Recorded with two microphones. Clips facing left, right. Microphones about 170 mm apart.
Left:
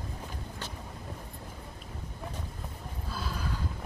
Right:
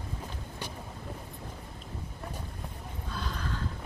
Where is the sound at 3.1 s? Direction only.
5° left (ahead or behind).